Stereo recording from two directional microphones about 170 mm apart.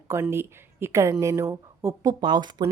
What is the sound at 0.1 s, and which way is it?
A woman's voice, 15° right (ahead or behind).